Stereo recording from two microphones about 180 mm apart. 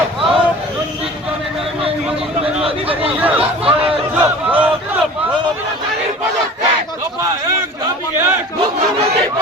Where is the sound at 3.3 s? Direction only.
30° right (ahead or behind).